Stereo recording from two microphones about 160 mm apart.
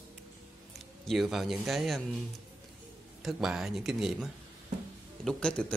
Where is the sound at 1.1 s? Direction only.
Centre (ahead or behind).